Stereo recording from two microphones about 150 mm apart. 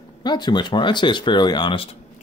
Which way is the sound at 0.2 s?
30° left (ahead or behind).